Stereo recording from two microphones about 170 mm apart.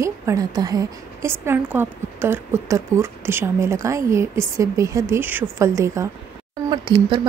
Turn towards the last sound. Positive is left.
turn(degrees=-25)  # may be behind; listen again after turning